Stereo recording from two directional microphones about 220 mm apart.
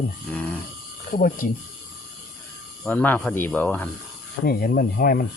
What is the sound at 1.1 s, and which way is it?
Speech, 40° left (ahead or behind).